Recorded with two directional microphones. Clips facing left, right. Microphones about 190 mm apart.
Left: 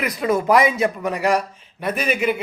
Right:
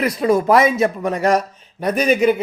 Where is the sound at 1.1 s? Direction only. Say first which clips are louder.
Right 3 dB; 35° right (ahead or behind).